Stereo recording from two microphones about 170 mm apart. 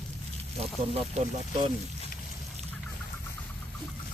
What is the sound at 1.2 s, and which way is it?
Speech, 40° right (ahead or behind).